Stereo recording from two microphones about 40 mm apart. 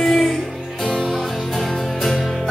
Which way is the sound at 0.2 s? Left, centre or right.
Centre.